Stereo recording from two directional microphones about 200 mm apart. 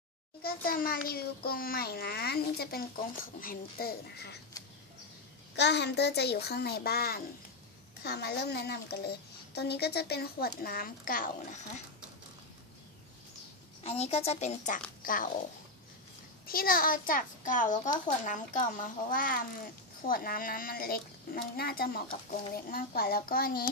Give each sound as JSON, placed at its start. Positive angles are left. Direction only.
{"t": 0.4, "sound": "a child's voice", "side_deg": 45}
{"t": 5.6, "sound": "a child's voice", "side_deg": 60}
{"t": 13.8, "sound": "a woman's voice", "side_deg": 30}
{"t": 15.0, "sound": "a child's voice", "side_deg": 45}
{"t": 16.4, "sound": "a child's voice", "side_deg": 45}
{"t": 17.8, "sound": "speech", "side_deg": 20}
{"t": 18.2, "sound": "a woman's voice", "side_deg": 40}